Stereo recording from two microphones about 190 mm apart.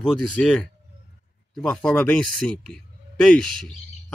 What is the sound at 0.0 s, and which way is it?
Speech, centre (ahead or behind).